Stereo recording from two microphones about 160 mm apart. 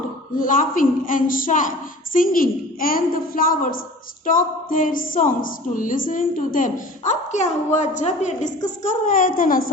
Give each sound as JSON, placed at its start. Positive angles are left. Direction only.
{"t": 0.3, "sound": "a woman's voice", "side_deg": 55}